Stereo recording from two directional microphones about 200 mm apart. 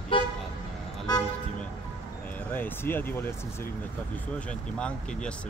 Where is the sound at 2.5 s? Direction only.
10° left (ahead or behind).